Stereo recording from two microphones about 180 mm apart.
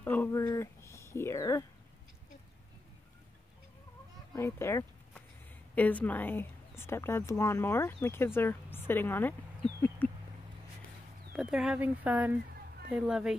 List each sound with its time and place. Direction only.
0.0 s speech: 10° left (ahead or behind)
4.4 s speech: 15° left (ahead or behind)
10.0 s a sound: 10° left (ahead or behind)
11.3 s a woman's voice: 5° right (ahead or behind)